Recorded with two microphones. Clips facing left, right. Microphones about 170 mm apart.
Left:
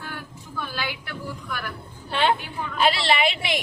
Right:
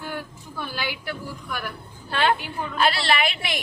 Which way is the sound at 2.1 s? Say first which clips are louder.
Even; 20° left (ahead or behind).